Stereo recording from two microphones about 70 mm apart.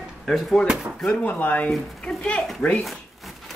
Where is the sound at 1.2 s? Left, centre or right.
Left.